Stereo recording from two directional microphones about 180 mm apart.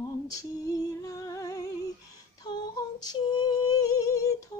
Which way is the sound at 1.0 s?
20° left (ahead or behind).